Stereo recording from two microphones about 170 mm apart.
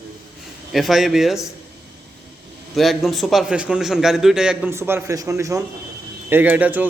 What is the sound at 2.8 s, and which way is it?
A man's voice, centre (ahead or behind).